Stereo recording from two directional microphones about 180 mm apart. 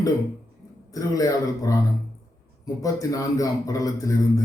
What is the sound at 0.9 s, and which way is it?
A man's voice, 20° left (ahead or behind).